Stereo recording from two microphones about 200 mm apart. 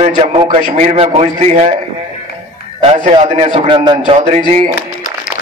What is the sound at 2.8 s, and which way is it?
A man's voice, 30° right (ahead or behind).